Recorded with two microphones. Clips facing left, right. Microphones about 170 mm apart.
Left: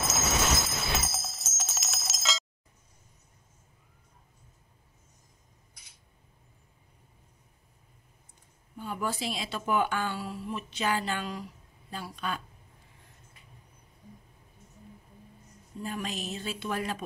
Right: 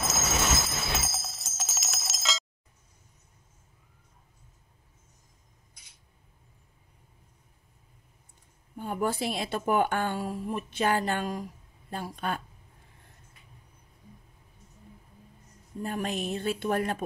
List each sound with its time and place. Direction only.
0.0 s jingle bell: centre (ahead or behind)
8.7 s speech: 50° right (ahead or behind)
15.8 s a woman's voice: 55° right (ahead or behind)